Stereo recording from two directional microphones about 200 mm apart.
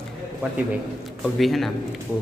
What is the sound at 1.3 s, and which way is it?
Speech, centre (ahead or behind).